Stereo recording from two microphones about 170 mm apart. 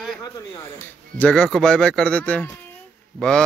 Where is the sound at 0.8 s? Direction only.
5° left (ahead or behind).